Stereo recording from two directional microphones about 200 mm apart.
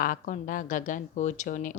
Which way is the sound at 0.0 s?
45° left (ahead or behind).